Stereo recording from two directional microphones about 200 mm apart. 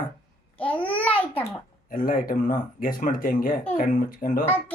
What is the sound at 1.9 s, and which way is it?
Speech, 45° left (ahead or behind).